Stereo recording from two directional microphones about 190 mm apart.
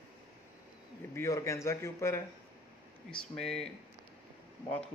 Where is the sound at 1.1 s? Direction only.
15° left (ahead or behind).